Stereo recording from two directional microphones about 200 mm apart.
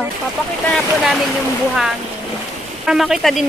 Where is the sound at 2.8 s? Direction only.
Centre (ahead or behind).